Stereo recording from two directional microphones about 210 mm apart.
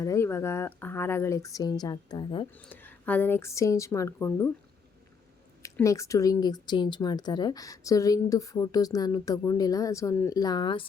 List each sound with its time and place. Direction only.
0.0 s speech: 15° left (ahead or behind)
2.6 s speech: 5° left (ahead or behind)
5.6 s speech: 15° left (ahead or behind)